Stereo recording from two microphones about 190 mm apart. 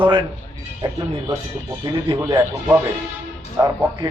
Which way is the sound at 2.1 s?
15° right (ahead or behind).